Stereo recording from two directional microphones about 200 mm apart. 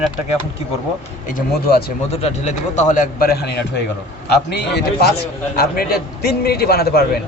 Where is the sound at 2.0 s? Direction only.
35° left (ahead or behind).